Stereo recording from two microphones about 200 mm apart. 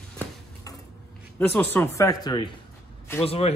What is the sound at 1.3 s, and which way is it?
A man's voice, 10° left (ahead or behind).